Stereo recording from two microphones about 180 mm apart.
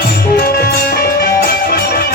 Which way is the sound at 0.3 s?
60° left (ahead or behind).